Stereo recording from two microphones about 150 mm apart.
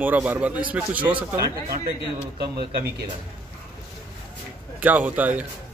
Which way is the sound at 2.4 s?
90° right.